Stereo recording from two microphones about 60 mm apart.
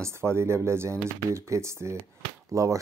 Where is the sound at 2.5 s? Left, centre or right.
Right.